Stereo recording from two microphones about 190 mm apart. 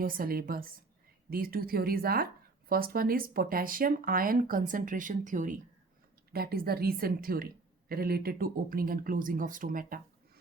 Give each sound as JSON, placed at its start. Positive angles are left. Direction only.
{"t": 0.0, "sound": "speech", "side_deg": -50}
{"t": 6.3, "sound": "speech", "side_deg": -55}